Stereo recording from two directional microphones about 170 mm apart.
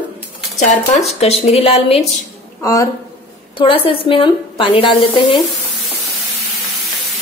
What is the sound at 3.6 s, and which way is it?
A woman's voice, 30° left (ahead or behind).